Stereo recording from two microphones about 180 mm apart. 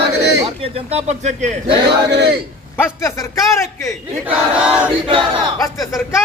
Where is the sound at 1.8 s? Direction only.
70° right (ahead or behind).